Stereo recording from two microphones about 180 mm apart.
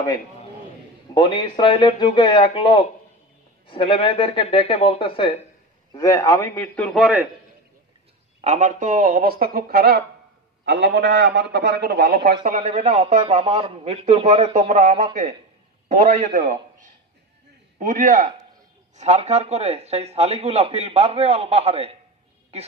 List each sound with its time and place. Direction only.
1.1 s speech: 25° left (ahead or behind)
5.9 s a man's voice: 20° left (ahead or behind); by 7.2 s centre (ahead or behind)
8.4 s speech: 40° right (ahead or behind); by 10.0 s 60° right (ahead or behind)
10.6 s a man's voice: 75° right (ahead or behind)
12.5 s speech: 40° right (ahead or behind)
14.7 s speech: 45° right (ahead or behind)
17.7 s a man's voice: 50° right (ahead or behind)